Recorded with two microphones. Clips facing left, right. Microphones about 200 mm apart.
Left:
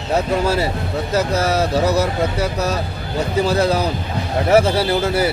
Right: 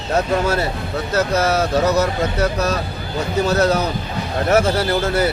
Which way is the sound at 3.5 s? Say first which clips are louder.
Right 2 dB; 10° left (ahead or behind).